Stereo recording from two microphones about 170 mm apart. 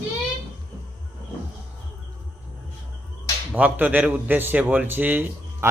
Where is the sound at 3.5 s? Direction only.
10° right (ahead or behind).